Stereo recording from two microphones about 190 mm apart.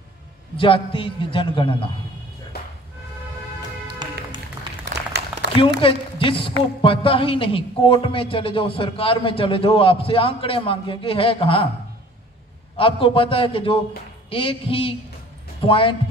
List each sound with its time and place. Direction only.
0.6 s a man's voice: 25° left (ahead or behind)
4.0 s music: 25° right (ahead or behind)
4.8 s a sound: 60° right (ahead or behind)
5.8 s a man's voice: 25° left (ahead or behind)
12.7 s a man's voice: 30° left (ahead or behind)